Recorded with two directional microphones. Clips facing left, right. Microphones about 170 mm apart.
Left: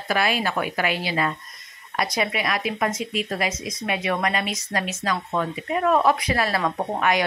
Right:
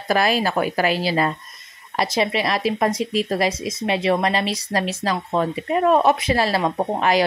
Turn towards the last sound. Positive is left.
turn(degrees=-30)  # may be behind; listen again after turning